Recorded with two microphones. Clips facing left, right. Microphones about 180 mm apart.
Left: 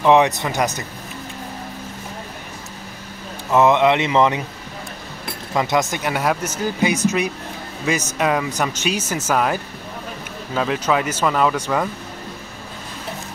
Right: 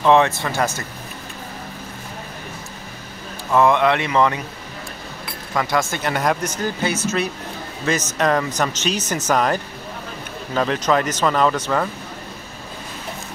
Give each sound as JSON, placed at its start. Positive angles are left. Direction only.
{"t": 0.0, "sound": "speech", "side_deg": 15}
{"t": 3.5, "sound": "speech", "side_deg": 20}
{"t": 5.5, "sound": "speech", "side_deg": 20}